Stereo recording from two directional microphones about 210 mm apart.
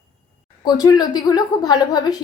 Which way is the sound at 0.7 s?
20° left (ahead or behind).